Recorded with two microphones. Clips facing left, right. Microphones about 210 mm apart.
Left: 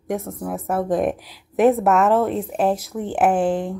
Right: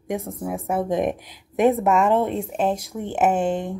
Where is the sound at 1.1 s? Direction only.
50° right (ahead or behind).